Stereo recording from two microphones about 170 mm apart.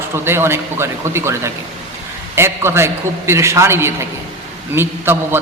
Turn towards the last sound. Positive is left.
turn(degrees=-15)  # may be behind; listen again after turning